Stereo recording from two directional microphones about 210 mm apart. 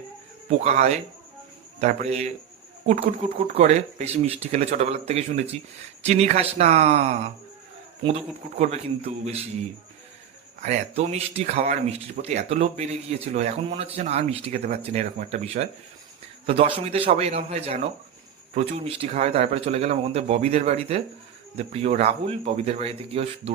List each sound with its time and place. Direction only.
0.6 s speech: 30° right (ahead or behind)
10.6 s speech: 30° right (ahead or behind)